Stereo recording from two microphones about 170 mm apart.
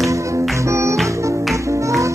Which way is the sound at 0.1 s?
20° right (ahead or behind).